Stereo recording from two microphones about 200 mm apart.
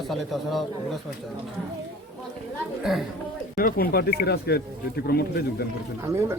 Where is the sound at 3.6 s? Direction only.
45° left (ahead or behind).